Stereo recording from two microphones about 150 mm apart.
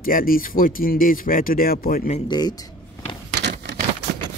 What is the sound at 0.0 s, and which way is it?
Speech, 70° left (ahead or behind).